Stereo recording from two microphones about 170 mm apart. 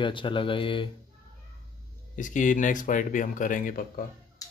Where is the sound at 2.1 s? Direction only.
50° left (ahead or behind).